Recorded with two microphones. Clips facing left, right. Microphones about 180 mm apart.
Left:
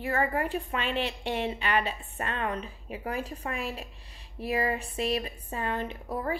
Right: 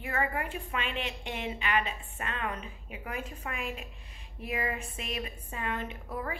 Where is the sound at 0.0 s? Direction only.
35° left (ahead or behind).